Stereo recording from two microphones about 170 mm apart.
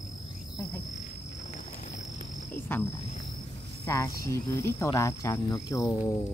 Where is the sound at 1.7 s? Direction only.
45° left (ahead or behind).